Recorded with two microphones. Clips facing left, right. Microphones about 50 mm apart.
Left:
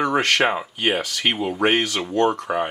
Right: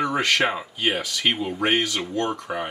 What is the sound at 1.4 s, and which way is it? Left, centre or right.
Speech, left.